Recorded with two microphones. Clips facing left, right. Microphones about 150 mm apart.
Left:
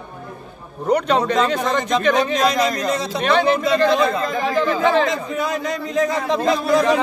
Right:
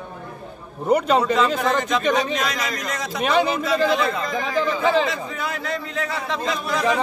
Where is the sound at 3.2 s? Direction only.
5° right (ahead or behind).